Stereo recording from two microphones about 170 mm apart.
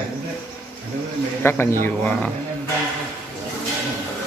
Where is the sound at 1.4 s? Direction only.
15° left (ahead or behind).